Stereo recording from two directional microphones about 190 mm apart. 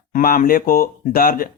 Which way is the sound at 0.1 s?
50° left (ahead or behind).